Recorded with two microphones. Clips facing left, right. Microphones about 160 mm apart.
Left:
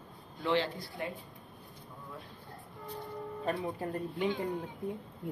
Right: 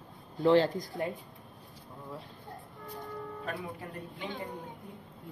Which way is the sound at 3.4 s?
30° left (ahead or behind).